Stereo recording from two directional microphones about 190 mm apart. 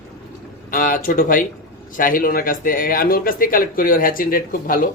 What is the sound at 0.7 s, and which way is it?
Speech, 45° left (ahead or behind).